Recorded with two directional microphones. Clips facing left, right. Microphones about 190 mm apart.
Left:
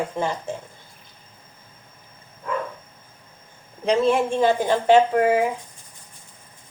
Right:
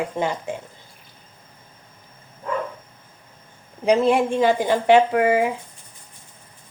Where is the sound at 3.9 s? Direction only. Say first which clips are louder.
Right 2 dB; 10° right (ahead or behind).